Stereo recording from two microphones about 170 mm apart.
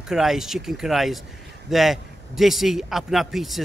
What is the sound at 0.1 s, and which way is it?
A man's voice, centre (ahead or behind).